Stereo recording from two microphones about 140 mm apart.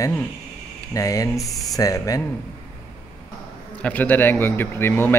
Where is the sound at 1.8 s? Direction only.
25° left (ahead or behind).